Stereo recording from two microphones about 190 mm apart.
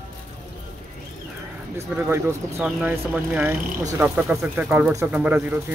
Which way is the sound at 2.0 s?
10° right (ahead or behind).